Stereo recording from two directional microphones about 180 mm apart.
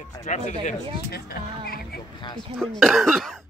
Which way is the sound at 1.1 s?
55° left (ahead or behind).